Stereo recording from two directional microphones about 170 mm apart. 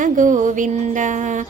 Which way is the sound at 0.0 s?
50° right (ahead or behind).